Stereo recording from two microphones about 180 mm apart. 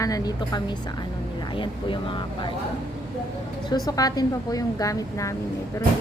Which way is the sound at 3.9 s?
20° left (ahead or behind).